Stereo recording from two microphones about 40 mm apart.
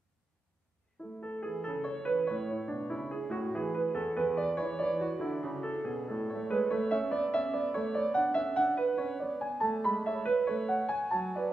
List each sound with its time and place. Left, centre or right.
1.5 s music: left
10.3 s music: centre